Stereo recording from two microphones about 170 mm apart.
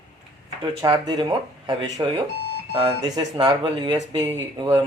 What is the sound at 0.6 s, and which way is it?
Speech, 25° right (ahead or behind).